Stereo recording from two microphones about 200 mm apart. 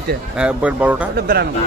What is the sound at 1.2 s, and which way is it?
Speech, 50° right (ahead or behind).